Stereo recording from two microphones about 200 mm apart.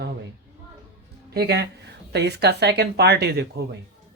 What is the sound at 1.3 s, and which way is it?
Speech, 55° right (ahead or behind).